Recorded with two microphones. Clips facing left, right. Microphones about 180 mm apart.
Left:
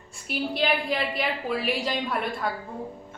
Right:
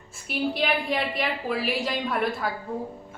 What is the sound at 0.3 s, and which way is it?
A woman's voice, centre (ahead or behind).